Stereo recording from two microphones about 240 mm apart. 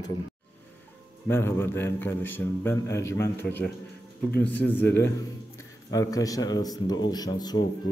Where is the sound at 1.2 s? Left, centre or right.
Centre.